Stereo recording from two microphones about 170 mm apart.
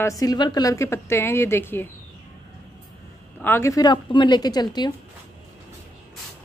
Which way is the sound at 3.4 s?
15° left (ahead or behind).